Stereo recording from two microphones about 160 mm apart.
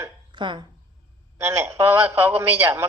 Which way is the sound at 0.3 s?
30° right (ahead or behind).